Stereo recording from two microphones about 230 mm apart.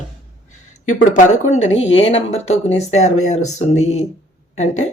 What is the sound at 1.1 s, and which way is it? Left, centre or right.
Speech, left.